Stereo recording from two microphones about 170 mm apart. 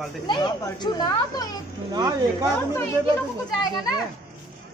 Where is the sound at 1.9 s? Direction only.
20° right (ahead or behind).